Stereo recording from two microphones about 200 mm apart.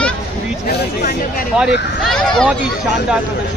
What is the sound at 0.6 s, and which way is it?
Speech, 50° left (ahead or behind).